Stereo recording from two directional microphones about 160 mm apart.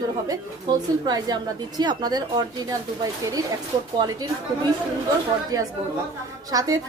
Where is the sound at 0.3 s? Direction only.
25° right (ahead or behind).